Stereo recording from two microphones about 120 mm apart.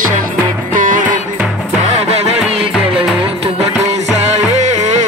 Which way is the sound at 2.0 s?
60° right (ahead or behind).